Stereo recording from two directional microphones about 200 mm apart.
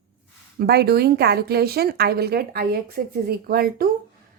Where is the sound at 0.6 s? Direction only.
55° right (ahead or behind).